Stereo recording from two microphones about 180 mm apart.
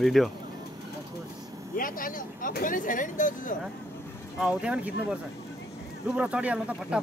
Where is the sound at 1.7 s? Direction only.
50° left (ahead or behind).